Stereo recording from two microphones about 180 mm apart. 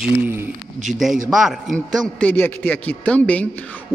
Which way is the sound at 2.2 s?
10° left (ahead or behind).